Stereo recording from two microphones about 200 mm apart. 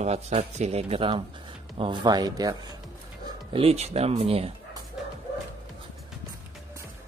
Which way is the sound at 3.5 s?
30° right (ahead or behind).